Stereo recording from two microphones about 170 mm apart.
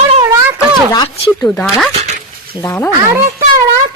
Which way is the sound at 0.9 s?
25° left (ahead or behind).